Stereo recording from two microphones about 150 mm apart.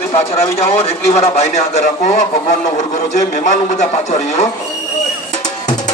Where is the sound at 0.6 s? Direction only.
45° left (ahead or behind).